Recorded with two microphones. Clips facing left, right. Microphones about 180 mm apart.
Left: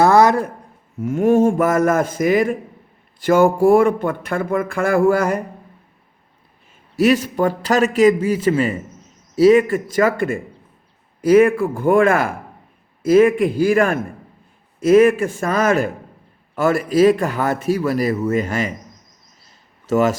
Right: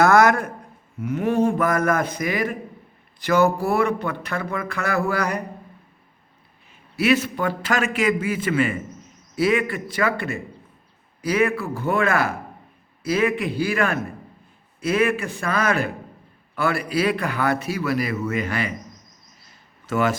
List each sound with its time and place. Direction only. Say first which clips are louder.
0.0 s a man's voice: left 3 dB; 30° left (ahead or behind)
0.9 s speech: left 6 dB; 45° left (ahead or behind)
6.9 s a man's voice: left 4 dB; 40° left (ahead or behind)
19.9 s a man's voice: left 5 dB; 40° left (ahead or behind)